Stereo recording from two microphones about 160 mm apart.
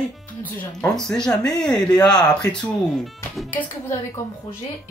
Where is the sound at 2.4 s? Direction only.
10° left (ahead or behind).